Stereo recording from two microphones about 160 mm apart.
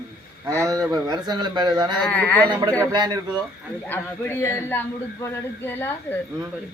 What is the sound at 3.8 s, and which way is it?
A man's voice, 10° left (ahead or behind).